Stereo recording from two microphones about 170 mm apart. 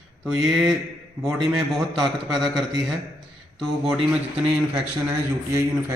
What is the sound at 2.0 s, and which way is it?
Speech, centre (ahead or behind).